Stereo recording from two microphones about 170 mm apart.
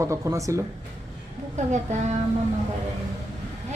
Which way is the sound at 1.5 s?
45° right (ahead or behind).